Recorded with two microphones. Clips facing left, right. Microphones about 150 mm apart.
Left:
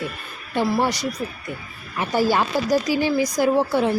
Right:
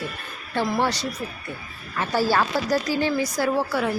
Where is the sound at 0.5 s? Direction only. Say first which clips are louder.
Left 2 dB; 10° left (ahead or behind).